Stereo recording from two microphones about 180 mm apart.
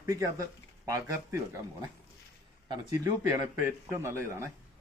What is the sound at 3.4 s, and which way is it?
A man's voice, 15° right (ahead or behind).